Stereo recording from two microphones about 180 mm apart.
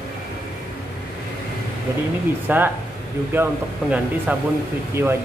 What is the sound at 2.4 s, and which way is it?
A man's voice, 10° right (ahead or behind).